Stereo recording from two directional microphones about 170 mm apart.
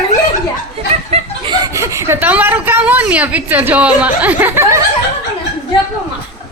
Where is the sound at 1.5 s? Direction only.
20° right (ahead or behind).